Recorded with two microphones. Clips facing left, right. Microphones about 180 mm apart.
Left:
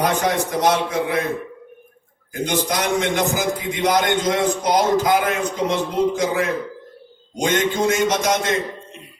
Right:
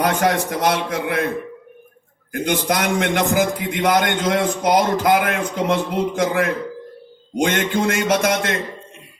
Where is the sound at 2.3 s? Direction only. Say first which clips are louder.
Right 2 dB; 55° right (ahead or behind).